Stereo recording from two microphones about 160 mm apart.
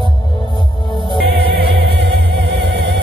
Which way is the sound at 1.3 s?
90° right.